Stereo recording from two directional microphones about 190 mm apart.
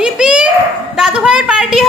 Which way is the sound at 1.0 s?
5° right (ahead or behind).